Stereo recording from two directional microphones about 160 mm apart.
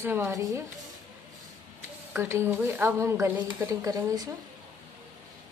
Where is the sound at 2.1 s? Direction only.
15° right (ahead or behind).